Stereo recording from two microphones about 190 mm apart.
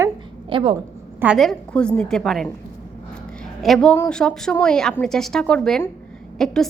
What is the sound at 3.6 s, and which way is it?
A woman's voice, centre (ahead or behind).